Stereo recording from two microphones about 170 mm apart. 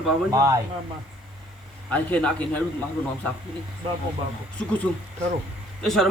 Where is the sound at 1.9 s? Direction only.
10° left (ahead or behind).